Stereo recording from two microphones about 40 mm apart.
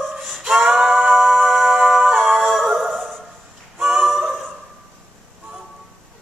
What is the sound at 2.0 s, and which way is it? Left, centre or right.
Music, right.